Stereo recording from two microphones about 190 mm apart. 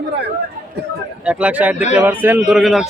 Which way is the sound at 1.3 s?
5° right (ahead or behind).